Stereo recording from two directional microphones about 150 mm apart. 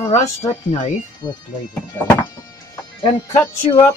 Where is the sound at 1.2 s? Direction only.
30° left (ahead or behind).